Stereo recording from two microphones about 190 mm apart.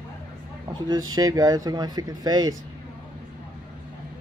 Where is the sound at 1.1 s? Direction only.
20° right (ahead or behind).